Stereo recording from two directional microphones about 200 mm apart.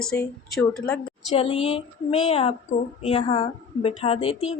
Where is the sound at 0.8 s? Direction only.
5° left (ahead or behind).